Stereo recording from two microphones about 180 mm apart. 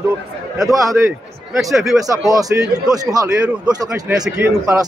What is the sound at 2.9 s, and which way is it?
A man's voice, 20° right (ahead or behind).